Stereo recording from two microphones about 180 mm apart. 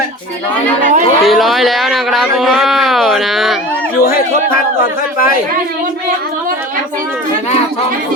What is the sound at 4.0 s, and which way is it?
Speech, 55° left (ahead or behind).